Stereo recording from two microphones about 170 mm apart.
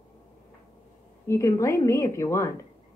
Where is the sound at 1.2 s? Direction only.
15° left (ahead or behind).